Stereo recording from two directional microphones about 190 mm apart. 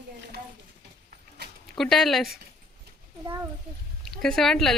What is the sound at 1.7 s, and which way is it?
Speech, centre (ahead or behind).